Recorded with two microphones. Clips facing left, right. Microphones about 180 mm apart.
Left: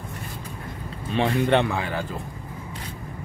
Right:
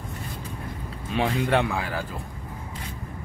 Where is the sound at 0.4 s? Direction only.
5° right (ahead or behind).